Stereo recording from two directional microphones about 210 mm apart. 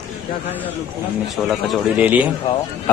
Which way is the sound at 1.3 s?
Centre (ahead or behind).